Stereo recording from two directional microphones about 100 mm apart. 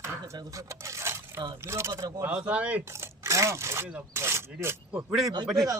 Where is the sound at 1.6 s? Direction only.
30° right (ahead or behind).